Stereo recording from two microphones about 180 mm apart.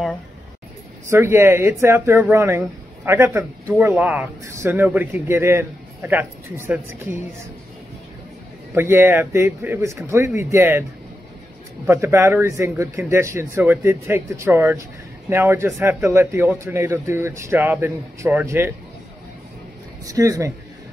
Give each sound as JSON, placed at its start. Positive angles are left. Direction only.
{"t": 1.1, "sound": "speech", "side_deg": -15}
{"t": 8.7, "sound": "speech", "side_deg": -15}
{"t": 20.1, "sound": "speech", "side_deg": -20}